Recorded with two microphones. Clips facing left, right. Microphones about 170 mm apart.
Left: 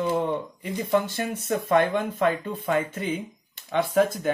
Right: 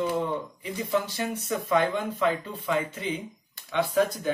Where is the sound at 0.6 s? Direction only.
50° left (ahead or behind).